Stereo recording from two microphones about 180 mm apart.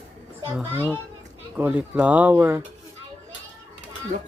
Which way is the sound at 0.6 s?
10° right (ahead or behind).